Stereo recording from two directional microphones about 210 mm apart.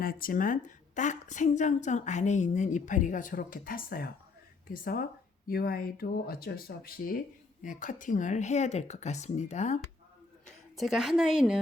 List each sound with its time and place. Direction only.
0.0 s a woman's voice: 40° left (ahead or behind)
10.4 s a woman's voice: centre (ahead or behind)